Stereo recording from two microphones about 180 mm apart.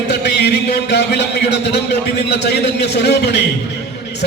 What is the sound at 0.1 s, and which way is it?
A man's voice, 65° left (ahead or behind).